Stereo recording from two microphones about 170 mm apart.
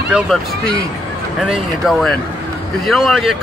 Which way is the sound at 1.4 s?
Centre (ahead or behind).